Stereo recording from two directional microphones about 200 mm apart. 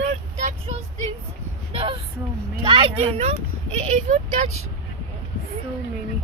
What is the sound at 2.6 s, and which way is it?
Speech, 25° right (ahead or behind).